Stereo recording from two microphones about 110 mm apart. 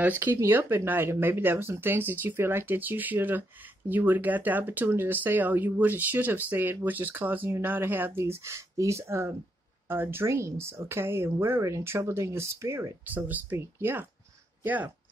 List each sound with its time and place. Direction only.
0.0 s speech: 20° right (ahead or behind)